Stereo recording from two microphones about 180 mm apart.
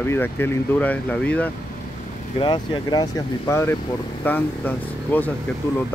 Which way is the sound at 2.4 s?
25° left (ahead or behind).